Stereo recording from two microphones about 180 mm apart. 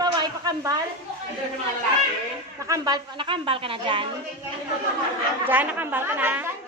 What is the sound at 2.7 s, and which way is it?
Speech, 25° right (ahead or behind).